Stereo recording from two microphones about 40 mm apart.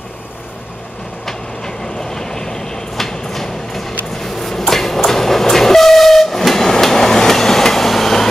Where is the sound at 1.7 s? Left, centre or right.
Centre.